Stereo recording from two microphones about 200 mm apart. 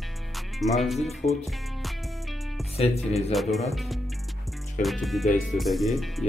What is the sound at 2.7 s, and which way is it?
Speech, 30° left (ahead or behind).